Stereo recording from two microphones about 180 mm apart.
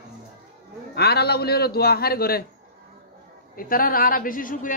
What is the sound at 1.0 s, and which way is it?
A man's voice, 65° left (ahead or behind).